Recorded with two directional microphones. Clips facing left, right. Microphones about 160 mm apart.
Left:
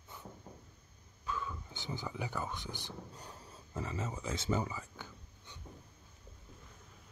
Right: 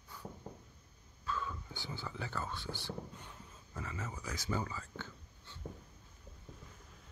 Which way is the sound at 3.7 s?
25° left (ahead or behind).